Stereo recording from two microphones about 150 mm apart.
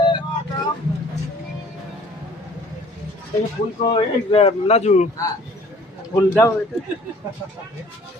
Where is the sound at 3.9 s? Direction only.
40° left (ahead or behind).